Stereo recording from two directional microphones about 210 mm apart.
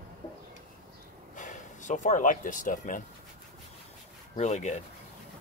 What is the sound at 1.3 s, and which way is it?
Speech, 35° left (ahead or behind).